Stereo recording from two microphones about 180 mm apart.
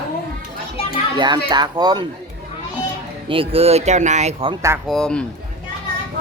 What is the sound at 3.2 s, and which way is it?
Speech, 30° right (ahead or behind).